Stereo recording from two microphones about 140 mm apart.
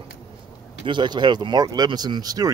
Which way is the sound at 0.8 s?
35° right (ahead or behind).